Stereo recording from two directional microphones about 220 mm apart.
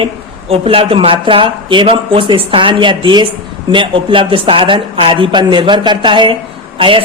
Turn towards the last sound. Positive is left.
turn(degrees=-25)  # may be behind; listen again after turning